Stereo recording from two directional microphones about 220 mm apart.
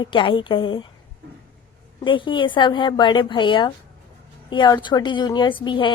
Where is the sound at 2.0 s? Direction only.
20° left (ahead or behind).